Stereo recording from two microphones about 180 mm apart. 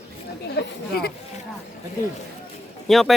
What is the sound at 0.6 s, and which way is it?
Speech, 60° left (ahead or behind).